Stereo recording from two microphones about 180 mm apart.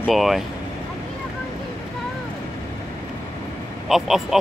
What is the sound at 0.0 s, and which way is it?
Speech, centre (ahead or behind).